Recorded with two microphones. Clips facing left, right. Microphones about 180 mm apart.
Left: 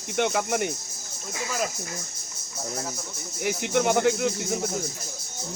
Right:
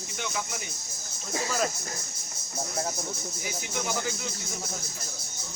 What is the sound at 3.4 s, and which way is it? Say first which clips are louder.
Speech: left 11 dB; 65° left (ahead or behind).